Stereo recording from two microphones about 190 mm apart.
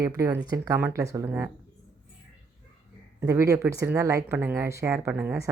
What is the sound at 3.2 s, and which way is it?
Speech, 15° right (ahead or behind).